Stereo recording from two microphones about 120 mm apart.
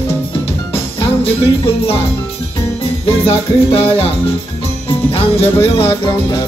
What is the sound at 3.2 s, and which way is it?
Music, 50° left (ahead or behind).